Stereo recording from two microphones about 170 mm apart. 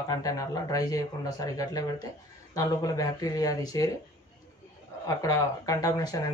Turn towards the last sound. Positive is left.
turn(degrees=20)  # may be behind; listen again after turning